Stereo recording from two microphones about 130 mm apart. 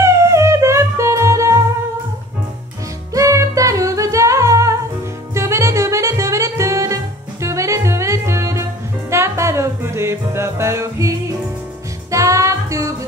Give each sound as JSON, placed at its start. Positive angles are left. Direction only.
{"t": 0.0, "sound": "music", "side_deg": -20}
{"t": 3.1, "sound": "music", "side_deg": -25}